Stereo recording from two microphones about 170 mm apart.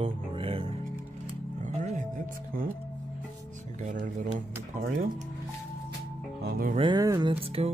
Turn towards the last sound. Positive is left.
turn(degrees=-30)  # may be behind; listen again after turning